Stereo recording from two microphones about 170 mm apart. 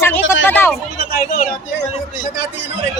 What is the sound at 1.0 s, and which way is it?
Speech, 60° left (ahead or behind).